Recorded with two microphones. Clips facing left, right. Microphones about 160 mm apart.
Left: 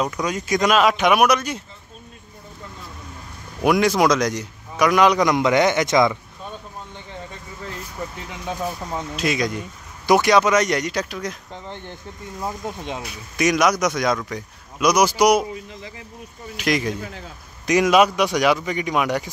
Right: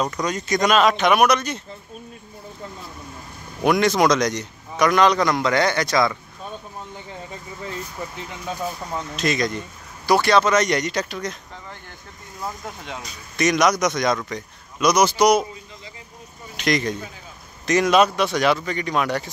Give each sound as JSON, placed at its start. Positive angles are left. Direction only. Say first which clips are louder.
{"t": 0.0, "sound": "speech", "louder": "even", "side_deg": 10}
{"t": 3.6, "sound": "speech", "louder": "even", "side_deg": 5}
{"t": 8.0, "sound": "speech", "louder": "left 4 dB", "side_deg": -5}
{"t": 8.5, "sound": "speech", "louder": "left 2 dB", "side_deg": 10}
{"t": 11.5, "sound": "speech", "louder": "left 5 dB", "side_deg": 20}
{"t": 13.0, "sound": "speech", "louder": "even", "side_deg": 10}
{"t": 16.5, "sound": "speech", "louder": "even", "side_deg": 5}